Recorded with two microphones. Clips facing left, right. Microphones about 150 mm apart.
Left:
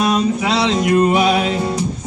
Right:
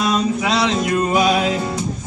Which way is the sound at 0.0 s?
30° left (ahead or behind).